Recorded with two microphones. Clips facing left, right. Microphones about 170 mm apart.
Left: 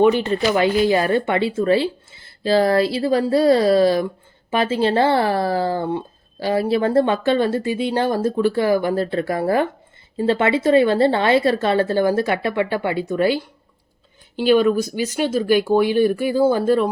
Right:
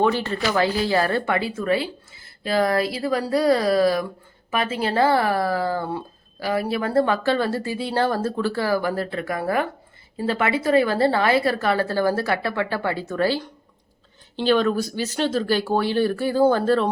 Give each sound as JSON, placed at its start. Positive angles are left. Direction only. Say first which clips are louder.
{"t": 0.0, "sound": "speech", "louder": "left 5 dB", "side_deg": 20}